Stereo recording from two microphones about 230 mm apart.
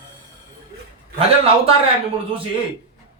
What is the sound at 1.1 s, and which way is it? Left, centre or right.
Speech, right.